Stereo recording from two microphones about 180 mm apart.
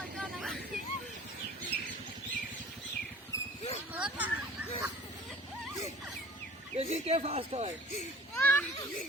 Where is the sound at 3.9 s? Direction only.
10° right (ahead or behind).